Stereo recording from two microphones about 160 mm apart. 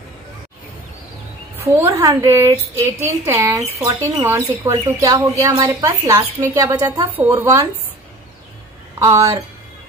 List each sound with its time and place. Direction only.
1.6 s a woman's voice: 15° right (ahead or behind)
9.0 s speech: 20° right (ahead or behind)